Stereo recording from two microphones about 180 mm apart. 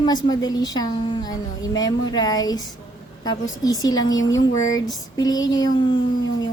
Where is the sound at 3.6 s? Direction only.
20° left (ahead or behind).